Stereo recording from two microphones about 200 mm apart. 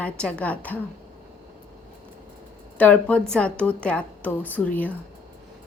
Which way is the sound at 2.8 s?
5° left (ahead or behind).